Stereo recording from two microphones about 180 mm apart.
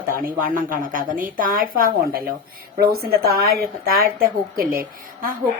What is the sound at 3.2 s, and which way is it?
A woman's voice, 60° right (ahead or behind).